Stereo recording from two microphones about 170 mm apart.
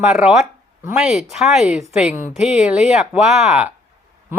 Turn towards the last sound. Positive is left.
turn(degrees=-5)  # may be behind; listen again after turning